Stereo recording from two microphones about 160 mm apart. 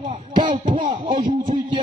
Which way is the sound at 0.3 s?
30° right (ahead or behind).